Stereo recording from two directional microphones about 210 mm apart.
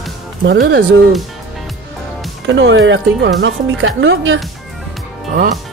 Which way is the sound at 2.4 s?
55° right (ahead or behind).